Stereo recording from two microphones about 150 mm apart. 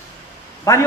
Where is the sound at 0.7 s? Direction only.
20° left (ahead or behind).